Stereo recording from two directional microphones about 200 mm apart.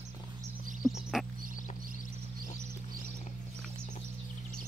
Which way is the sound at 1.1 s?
Centre (ahead or behind).